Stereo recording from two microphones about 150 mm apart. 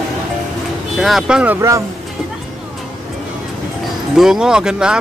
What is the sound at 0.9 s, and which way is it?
Speech, centre (ahead or behind).